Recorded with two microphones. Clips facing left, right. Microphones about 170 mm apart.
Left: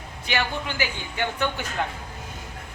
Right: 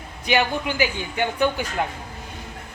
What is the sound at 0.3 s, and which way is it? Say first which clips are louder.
Speech: right 6 dB; 15° right (ahead or behind).